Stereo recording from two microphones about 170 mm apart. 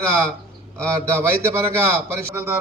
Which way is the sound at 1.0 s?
15° right (ahead or behind).